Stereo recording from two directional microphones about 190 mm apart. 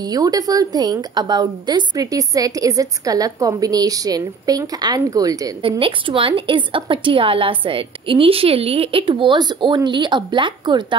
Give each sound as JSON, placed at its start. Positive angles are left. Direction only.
{"t": 0.0, "sound": "a woman's voice", "side_deg": -20}